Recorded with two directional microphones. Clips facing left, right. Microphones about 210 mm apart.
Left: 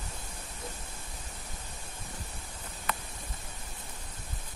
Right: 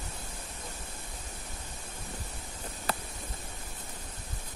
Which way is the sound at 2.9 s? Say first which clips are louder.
Right 2 dB; 35° right (ahead or behind).